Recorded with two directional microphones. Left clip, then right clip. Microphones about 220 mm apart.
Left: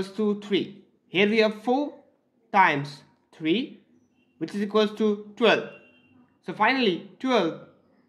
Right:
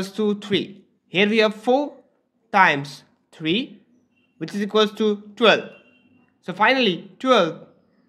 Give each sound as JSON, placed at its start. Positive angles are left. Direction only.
{"t": 0.0, "sound": "speech", "side_deg": -25}